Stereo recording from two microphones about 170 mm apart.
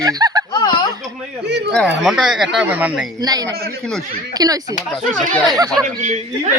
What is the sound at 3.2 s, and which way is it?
A man's voice, 25° right (ahead or behind).